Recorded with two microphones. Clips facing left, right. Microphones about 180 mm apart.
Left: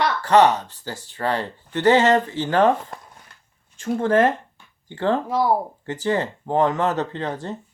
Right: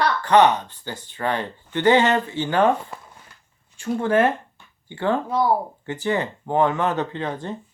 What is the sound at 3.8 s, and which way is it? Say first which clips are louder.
Speech: left 1 dB; 40° left (ahead or behind).